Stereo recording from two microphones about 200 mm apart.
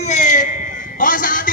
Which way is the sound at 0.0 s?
35° left (ahead or behind).